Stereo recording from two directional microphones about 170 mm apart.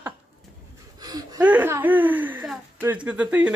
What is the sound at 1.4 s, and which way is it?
A man's voice, 10° right (ahead or behind).